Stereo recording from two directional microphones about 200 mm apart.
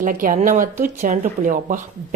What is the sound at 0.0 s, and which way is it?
A woman's voice, 45° right (ahead or behind).